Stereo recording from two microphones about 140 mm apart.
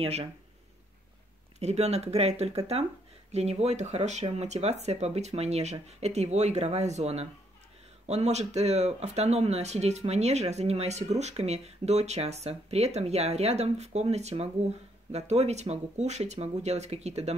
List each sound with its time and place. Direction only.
0.0 s speech: 45° right (ahead or behind)
1.6 s speech: 50° right (ahead or behind)